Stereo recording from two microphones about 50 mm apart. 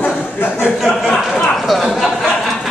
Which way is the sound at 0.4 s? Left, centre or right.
Left.